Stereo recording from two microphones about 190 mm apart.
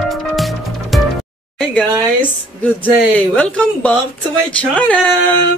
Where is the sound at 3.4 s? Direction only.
5° left (ahead or behind).